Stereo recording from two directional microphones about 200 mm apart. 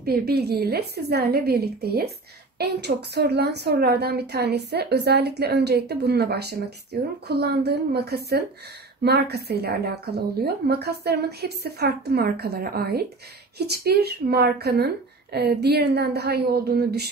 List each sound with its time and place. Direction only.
0.0 s a woman's voice: 50° right (ahead or behind)